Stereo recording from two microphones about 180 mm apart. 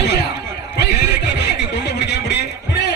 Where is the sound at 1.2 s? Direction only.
70° left (ahead or behind).